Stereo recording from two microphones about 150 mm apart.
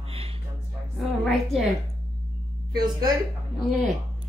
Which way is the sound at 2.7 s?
25° right (ahead or behind).